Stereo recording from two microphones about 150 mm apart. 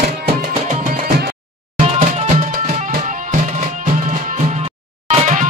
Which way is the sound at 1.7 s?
45° right (ahead or behind).